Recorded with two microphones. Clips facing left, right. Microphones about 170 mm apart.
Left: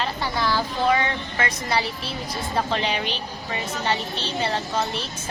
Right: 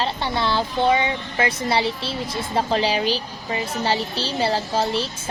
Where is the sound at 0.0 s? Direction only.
25° right (ahead or behind).